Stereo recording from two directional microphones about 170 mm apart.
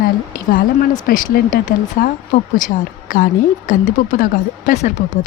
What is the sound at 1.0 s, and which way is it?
Speech, 55° left (ahead or behind).